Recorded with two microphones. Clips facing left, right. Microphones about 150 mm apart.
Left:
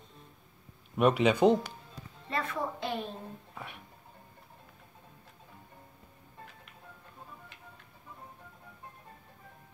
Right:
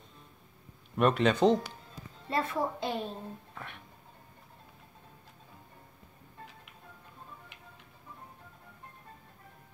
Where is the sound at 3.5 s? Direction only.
10° left (ahead or behind).